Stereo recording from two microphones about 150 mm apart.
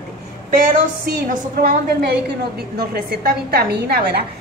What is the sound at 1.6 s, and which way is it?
A woman's voice, 85° right.